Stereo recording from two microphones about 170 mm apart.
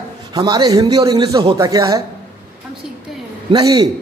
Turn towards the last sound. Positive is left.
turn(degrees=-25)  # may be behind; listen again after turning